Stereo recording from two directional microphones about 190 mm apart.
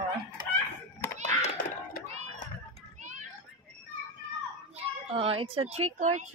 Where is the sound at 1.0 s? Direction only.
10° left (ahead or behind).